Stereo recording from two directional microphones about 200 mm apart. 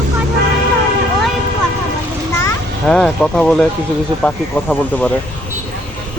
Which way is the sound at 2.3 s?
10° left (ahead or behind).